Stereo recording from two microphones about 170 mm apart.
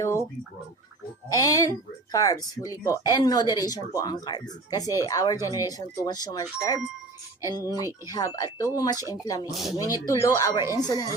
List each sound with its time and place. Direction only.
0.0 s a sound: 15° left (ahead or behind)
1.3 s speech: 20° left (ahead or behind)
7.7 s speech: 15° right (ahead or behind)
8.0 s speech: 20° left (ahead or behind)
9.5 s speech: centre (ahead or behind)
9.7 s speech: 20° left (ahead or behind)